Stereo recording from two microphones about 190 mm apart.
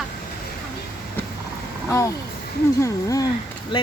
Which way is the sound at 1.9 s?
15° left (ahead or behind).